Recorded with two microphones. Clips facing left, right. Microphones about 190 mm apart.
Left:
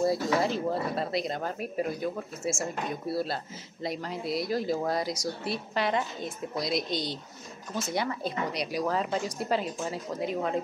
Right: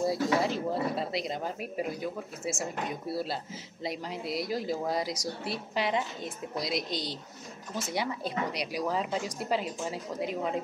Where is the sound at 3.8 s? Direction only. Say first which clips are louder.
Left 2 dB; 10° right (ahead or behind).